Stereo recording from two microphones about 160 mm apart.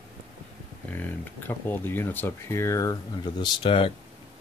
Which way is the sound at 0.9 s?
10° left (ahead or behind).